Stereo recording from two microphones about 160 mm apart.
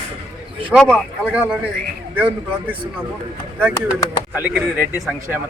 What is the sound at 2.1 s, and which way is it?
Speech, 10° right (ahead or behind).